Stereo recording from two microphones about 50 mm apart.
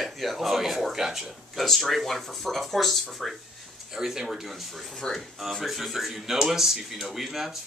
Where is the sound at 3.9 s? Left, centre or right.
Centre.